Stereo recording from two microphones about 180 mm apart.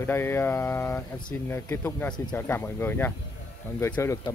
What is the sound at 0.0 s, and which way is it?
Speech, 10° left (ahead or behind).